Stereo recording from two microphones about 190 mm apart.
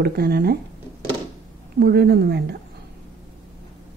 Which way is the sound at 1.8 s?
60° right (ahead or behind).